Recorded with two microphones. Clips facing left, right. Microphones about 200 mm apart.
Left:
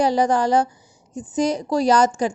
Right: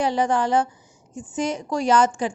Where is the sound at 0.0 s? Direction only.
40° left (ahead or behind).